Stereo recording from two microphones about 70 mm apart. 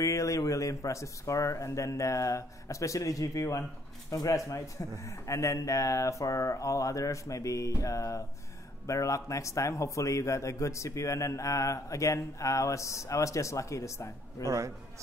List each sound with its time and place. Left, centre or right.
0.0 s a man's voice: left
14.4 s a man's voice: right